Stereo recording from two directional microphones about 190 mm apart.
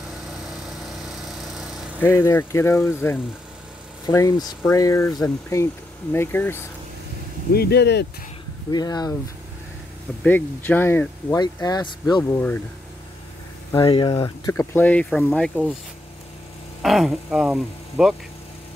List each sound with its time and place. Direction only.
1.5 s a sound: centre (ahead or behind)
2.0 s speech: 15° left (ahead or behind)
7.5 s speech: 60° left (ahead or behind)
8.6 s speech: 20° left (ahead or behind)
10.2 s speech: 10° left (ahead or behind)
12.2 s speech: 10° left (ahead or behind)
13.7 s speech: 25° left (ahead or behind); by 15.7 s 5° left (ahead or behind)
16.8 s speech: centre (ahead or behind)